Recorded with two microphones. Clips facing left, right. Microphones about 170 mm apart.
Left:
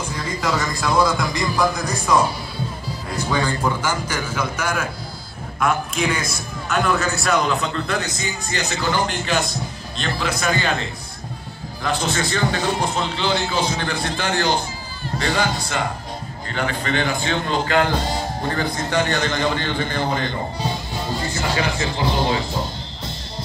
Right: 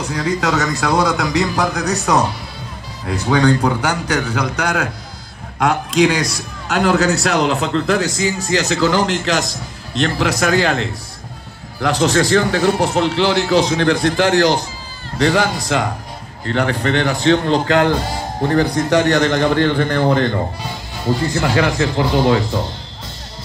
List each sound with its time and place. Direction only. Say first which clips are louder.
0.0 s a man's voice: right 6 dB; 75° right (ahead or behind)
3.3 s a man's voice: right 8 dB; 75° right (ahead or behind); by 20.3 s 55° right (ahead or behind)
21.4 s a man's voice: right 5 dB; 60° right (ahead or behind)